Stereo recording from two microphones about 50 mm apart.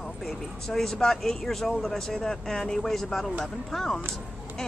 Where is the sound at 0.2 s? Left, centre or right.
Centre.